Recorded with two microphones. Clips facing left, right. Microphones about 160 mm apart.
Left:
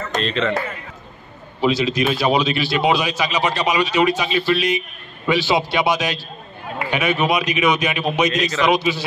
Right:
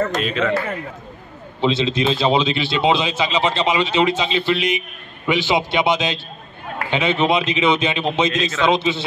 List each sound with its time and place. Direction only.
0.2 s a man's voice: 5° right (ahead or behind)
1.6 s a man's voice: 25° right (ahead or behind)